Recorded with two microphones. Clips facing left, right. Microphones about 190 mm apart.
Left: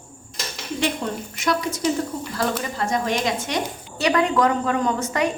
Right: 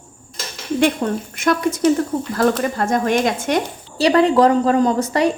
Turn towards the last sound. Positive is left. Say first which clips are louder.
# right 6 dB
turn(degrees=-35)  # may be behind; listen again after turning